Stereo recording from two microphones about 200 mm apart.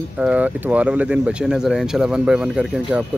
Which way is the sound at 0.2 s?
5° right (ahead or behind).